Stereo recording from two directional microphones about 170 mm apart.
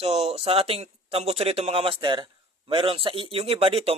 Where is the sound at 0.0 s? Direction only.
40° right (ahead or behind).